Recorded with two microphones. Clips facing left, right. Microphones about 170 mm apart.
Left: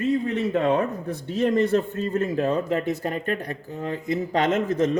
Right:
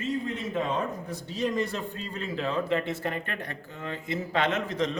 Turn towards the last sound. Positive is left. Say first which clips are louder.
# left 6 dB
turn(degrees=45)  # may be behind; listen again after turning